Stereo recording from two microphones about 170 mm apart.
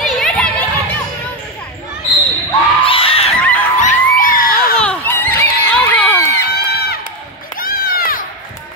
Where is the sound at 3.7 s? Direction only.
50° left (ahead or behind).